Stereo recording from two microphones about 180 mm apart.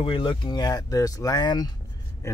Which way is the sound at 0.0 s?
30° left (ahead or behind).